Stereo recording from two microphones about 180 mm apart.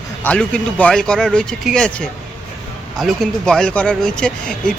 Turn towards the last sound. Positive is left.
turn(degrees=5)  # may be behind; listen again after turning